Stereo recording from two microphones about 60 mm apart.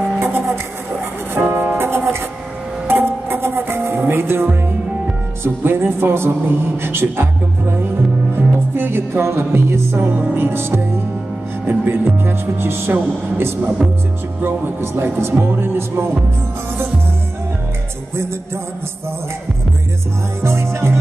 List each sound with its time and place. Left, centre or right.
0.2 s music: right
4.1 s speech: right
5.4 s music: right
20.4 s music: right